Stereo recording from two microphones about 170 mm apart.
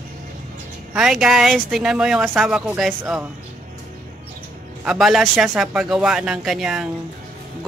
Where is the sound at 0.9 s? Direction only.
5° right (ahead or behind).